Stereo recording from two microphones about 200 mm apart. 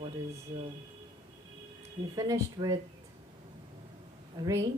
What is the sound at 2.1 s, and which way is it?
Speech, 20° right (ahead or behind).